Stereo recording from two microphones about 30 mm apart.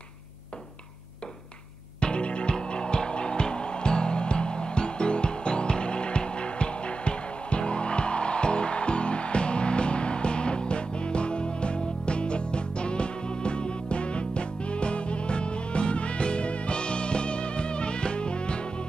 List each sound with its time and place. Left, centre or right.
2.0 s music: left